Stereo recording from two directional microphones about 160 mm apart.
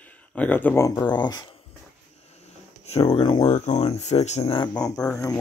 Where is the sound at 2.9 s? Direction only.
40° left (ahead or behind).